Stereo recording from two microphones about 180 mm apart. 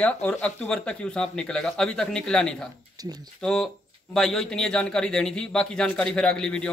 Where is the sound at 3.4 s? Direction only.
5° left (ahead or behind).